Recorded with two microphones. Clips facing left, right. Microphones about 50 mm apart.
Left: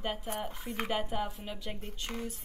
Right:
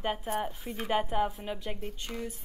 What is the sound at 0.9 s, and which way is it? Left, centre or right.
Speech, centre.